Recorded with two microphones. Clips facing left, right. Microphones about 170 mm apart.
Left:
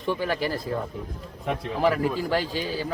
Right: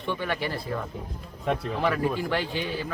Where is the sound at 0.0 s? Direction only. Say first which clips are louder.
Left 3 dB; 40° left (ahead or behind).